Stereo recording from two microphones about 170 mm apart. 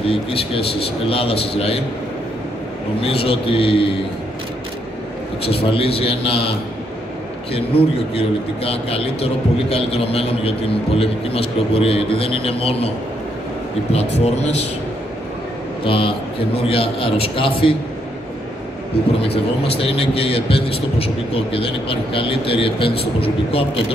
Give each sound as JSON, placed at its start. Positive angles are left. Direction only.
{"t": 0.0, "sound": "a man's voice", "side_deg": 35}
{"t": 3.0, "sound": "a man's voice", "side_deg": 35}
{"t": 5.4, "sound": "a man's voice", "side_deg": 35}
{"t": 7.5, "sound": "a man's voice", "side_deg": 35}
{"t": 13.9, "sound": "a man's voice", "side_deg": 40}
{"t": 15.8, "sound": "a man's voice", "side_deg": 30}
{"t": 19.2, "sound": "a man's voice", "side_deg": 35}